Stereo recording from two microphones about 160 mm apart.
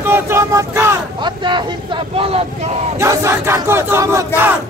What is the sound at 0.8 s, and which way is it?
Speech, 30° right (ahead or behind).